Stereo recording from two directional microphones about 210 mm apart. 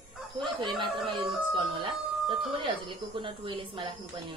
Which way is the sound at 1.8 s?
25° right (ahead or behind).